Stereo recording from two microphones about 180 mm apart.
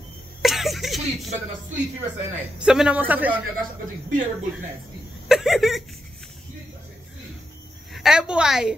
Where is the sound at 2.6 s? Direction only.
5° right (ahead or behind).